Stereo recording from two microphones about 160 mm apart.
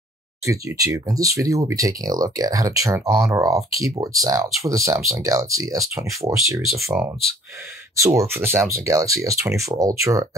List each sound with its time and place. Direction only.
0.5 s speech: 20° right (ahead or behind)
7.9 s speech: 20° right (ahead or behind)